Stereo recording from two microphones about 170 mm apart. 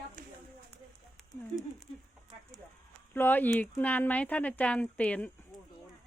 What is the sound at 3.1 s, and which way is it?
Speech, 10° left (ahead or behind).